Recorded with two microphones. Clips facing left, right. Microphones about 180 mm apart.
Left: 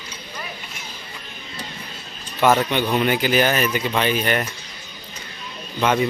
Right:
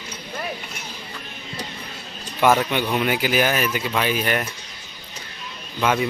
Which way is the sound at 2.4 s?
10° right (ahead or behind).